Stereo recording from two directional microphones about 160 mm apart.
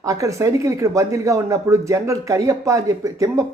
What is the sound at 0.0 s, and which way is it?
Speech, 20° right (ahead or behind).